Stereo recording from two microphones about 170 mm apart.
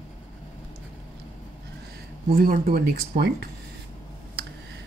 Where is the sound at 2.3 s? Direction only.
55° right (ahead or behind).